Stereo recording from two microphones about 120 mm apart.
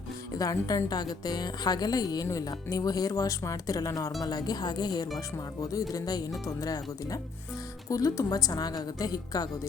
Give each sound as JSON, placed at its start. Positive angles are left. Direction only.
{"t": 0.3, "sound": "a woman's voice", "side_deg": 30}